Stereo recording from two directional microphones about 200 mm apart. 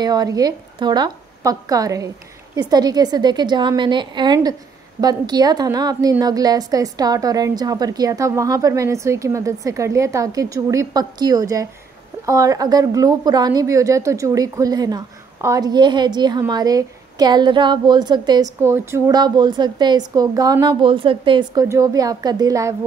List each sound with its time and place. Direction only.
0.0 s a woman's voice: 20° right (ahead or behind)